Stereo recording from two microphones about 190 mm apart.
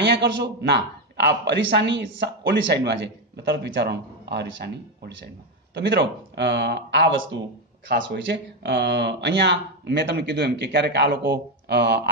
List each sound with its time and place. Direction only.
0.0 s speech: 60° right (ahead or behind)